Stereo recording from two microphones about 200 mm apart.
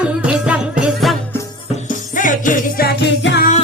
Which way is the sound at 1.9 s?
40° left (ahead or behind).